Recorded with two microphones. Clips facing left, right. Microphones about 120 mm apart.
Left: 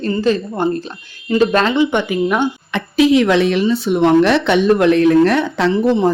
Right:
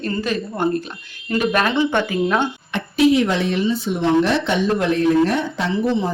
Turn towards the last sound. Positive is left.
turn(degrees=70)  # may be behind; listen again after turning